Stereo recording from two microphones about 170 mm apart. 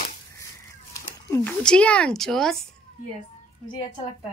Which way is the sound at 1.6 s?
5° left (ahead or behind).